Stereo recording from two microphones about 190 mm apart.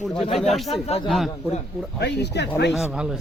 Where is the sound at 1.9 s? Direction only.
60° left (ahead or behind).